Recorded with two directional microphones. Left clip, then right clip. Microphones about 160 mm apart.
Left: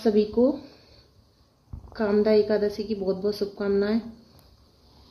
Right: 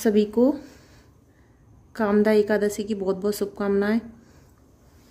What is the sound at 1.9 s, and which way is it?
A woman's voice, 55° right (ahead or behind).